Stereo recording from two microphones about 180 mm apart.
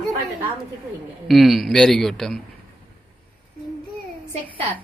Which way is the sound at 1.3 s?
Centre (ahead or behind).